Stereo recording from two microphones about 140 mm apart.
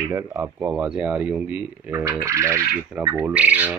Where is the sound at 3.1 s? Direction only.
10° right (ahead or behind).